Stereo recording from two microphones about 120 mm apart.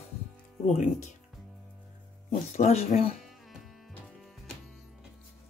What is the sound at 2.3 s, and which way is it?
Speech, 65° left (ahead or behind).